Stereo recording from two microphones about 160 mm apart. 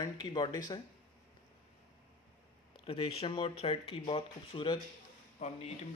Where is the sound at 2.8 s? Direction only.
35° left (ahead or behind).